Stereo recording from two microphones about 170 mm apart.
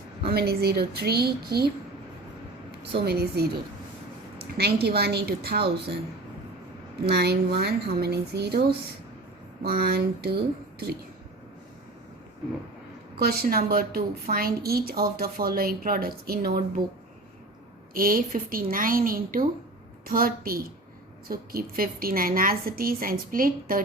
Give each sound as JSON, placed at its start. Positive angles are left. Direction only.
{"t": 0.3, "sound": "speech", "side_deg": -65}
{"t": 3.1, "sound": "speech", "side_deg": -70}
{"t": 4.5, "sound": "speech", "side_deg": -70}
{"t": 7.0, "sound": "speech", "side_deg": -70}
{"t": 13.1, "sound": "a woman's voice", "side_deg": -65}
{"t": 17.9, "sound": "a woman's voice", "side_deg": -55}